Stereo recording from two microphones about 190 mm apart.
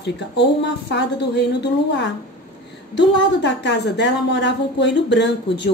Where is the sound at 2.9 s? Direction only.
65° left (ahead or behind).